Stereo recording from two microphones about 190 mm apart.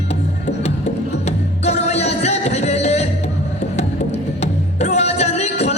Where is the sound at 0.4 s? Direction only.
35° left (ahead or behind).